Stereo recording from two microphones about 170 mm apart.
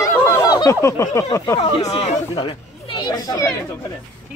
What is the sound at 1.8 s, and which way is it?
Speech, 40° left (ahead or behind).